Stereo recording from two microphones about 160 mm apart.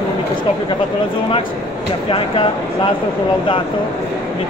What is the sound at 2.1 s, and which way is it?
Speech, 35° left (ahead or behind).